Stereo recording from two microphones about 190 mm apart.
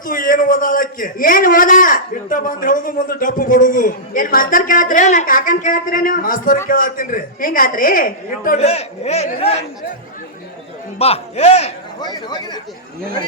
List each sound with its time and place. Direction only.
0.0 s a man's voice: 45° left (ahead or behind)
8.6 s speech: 35° left (ahead or behind)
10.9 s speech: 30° left (ahead or behind)
11.9 s speech: 20° left (ahead or behind)